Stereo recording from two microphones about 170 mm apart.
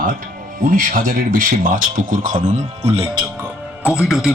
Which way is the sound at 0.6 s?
55° right (ahead or behind).